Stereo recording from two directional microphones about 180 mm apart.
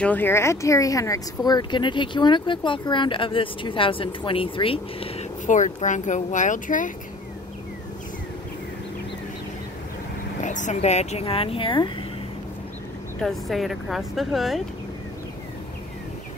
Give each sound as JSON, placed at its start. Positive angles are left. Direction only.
{"t": 0.0, "sound": "speech", "side_deg": 10}
{"t": 5.5, "sound": "speech", "side_deg": 45}
{"t": 10.4, "sound": "speech", "side_deg": 45}
{"t": 13.2, "sound": "speech", "side_deg": 0}